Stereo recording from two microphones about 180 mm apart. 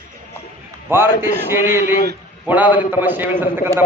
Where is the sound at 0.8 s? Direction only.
10° right (ahead or behind).